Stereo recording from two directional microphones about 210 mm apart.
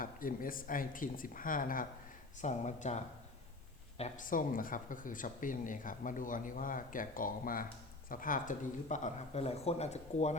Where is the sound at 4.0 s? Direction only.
40° left (ahead or behind).